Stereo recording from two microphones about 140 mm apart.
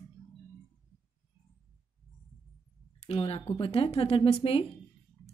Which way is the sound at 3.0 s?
45° left (ahead or behind).